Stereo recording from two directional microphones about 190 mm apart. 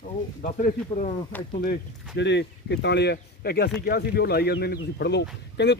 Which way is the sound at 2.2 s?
65° left (ahead or behind).